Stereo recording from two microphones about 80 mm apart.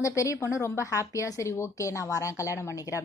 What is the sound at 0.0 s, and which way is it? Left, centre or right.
A woman's voice, left.